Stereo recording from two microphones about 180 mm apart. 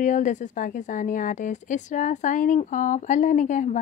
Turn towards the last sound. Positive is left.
turn(degrees=45)  # may be behind; listen again after turning